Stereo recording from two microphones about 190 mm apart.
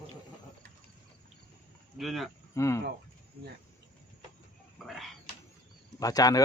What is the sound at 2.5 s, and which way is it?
Speech, 15° left (ahead or behind).